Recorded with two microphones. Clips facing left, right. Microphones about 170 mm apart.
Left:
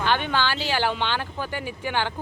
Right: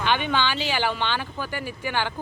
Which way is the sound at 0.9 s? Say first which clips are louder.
Even; 15° left (ahead or behind).